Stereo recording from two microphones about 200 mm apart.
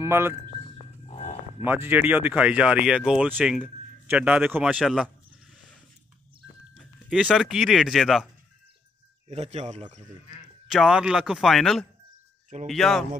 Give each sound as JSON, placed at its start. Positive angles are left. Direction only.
{"t": 0.0, "sound": "speech", "side_deg": -10}
{"t": 1.0, "sound": "livestock", "side_deg": 30}
{"t": 1.6, "sound": "speech", "side_deg": -10}
{"t": 6.4, "sound": "speech", "side_deg": 0}
{"t": 9.3, "sound": "speech", "side_deg": -30}
{"t": 10.7, "sound": "speech", "side_deg": 0}